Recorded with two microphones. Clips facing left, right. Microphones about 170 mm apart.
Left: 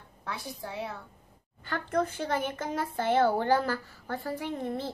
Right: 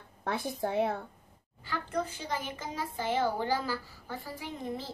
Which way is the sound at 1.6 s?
60° left (ahead or behind).